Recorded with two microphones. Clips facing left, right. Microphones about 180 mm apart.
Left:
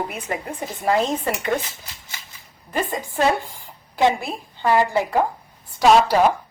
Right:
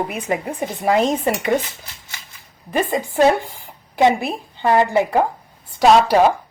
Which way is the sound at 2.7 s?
20° right (ahead or behind).